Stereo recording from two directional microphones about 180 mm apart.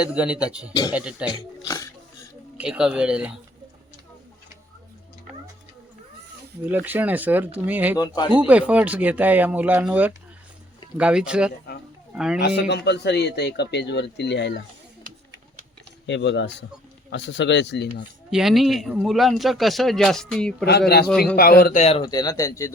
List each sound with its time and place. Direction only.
0.0 s speech: 5° right (ahead or behind)
1.6 s speech: 15° left (ahead or behind)
2.6 s speech: 5° right (ahead or behind)
6.7 s speech: 10° right (ahead or behind)
7.9 s speech: 20° left (ahead or behind)
8.3 s speech: 10° right (ahead or behind)
12.4 s a man's voice: 65° left (ahead or behind)
16.0 s a man's voice: 85° left
18.3 s speech: centre (ahead or behind)
20.7 s a man's voice: 65° left (ahead or behind); by 22.0 s 40° left (ahead or behind)
22.0 s speech: 20° left (ahead or behind)